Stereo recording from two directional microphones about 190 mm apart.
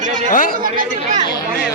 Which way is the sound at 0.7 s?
40° right (ahead or behind).